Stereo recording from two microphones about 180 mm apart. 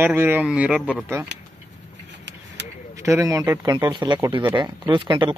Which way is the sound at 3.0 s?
15° right (ahead or behind).